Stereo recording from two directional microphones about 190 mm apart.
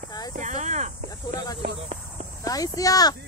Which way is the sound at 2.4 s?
20° left (ahead or behind).